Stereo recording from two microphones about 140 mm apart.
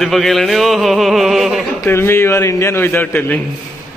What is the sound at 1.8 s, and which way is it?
A man's voice, 15° left (ahead or behind).